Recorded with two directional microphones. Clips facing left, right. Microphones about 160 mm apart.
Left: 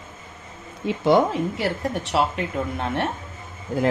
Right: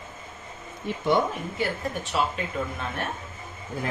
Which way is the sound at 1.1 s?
90° left.